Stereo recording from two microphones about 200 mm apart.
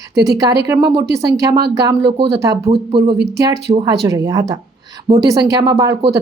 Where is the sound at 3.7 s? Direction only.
15° right (ahead or behind).